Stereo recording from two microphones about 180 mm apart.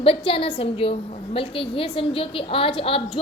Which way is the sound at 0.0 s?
30° left (ahead or behind).